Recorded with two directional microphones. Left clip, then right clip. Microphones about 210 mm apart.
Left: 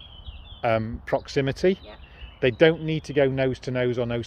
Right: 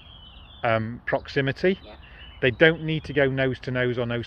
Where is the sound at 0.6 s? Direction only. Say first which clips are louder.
Even; 15° left (ahead or behind).